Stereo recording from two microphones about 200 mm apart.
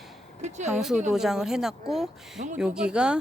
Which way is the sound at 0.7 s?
Centre (ahead or behind).